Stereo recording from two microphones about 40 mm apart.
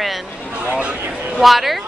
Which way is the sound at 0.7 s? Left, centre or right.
Right.